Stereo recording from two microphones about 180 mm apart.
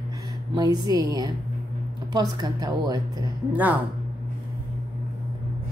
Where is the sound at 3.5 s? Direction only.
10° right (ahead or behind).